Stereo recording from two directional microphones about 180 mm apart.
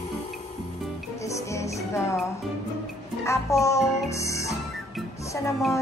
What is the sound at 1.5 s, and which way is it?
Music, 15° left (ahead or behind).